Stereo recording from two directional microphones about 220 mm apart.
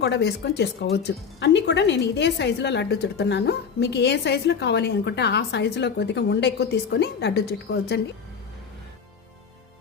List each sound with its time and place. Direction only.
0.0 s a woman's voice: 50° left (ahead or behind)